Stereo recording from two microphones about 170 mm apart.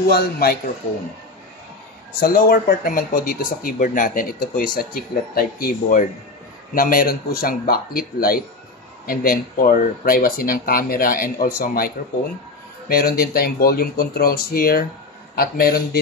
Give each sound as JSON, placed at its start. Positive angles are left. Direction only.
{"t": 0.1, "sound": "a man's voice", "side_deg": 65}
{"t": 2.1, "sound": "speech", "side_deg": 60}